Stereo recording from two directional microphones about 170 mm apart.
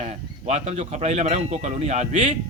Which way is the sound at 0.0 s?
40° right (ahead or behind).